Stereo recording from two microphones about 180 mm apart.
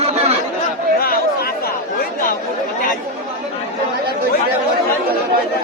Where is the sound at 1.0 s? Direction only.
55° left (ahead or behind).